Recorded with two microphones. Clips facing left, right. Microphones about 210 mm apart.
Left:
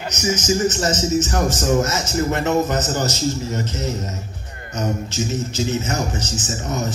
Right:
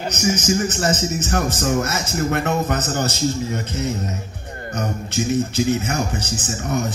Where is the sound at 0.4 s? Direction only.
55° right (ahead or behind).